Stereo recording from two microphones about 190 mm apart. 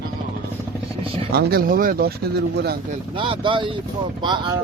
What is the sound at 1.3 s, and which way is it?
Speech, 50° right (ahead or behind).